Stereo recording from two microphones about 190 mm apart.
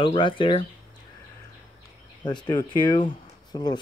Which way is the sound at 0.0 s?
25° left (ahead or behind).